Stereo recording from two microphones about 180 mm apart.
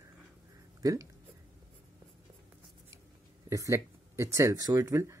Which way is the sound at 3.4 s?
15° right (ahead or behind).